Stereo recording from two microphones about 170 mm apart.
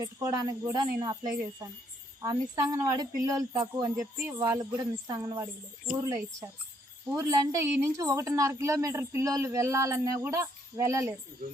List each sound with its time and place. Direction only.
0.0 s speech: 20° right (ahead or behind)
7.2 s a woman's voice: 20° right (ahead or behind)